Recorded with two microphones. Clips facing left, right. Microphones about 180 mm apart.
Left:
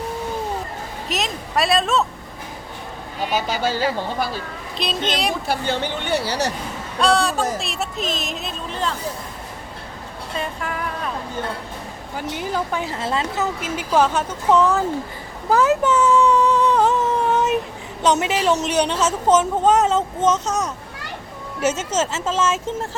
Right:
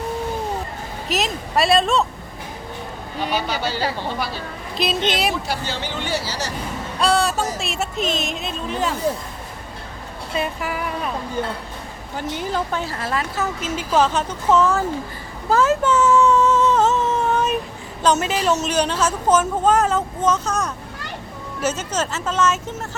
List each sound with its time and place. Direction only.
1.0 s speech: centre (ahead or behind)
3.3 s speech: 45° left (ahead or behind)
4.8 s speech: centre (ahead or behind)
5.5 s speech: 55° left (ahead or behind)
7.0 s speech: centre (ahead or behind)
10.3 s speech: 10° right (ahead or behind)
12.1 s a woman's voice: 10° left (ahead or behind)
15.4 s a sound: 15° left (ahead or behind)
18.0 s a woman's voice: 20° left (ahead or behind)
21.8 s a woman's voice: 20° left (ahead or behind)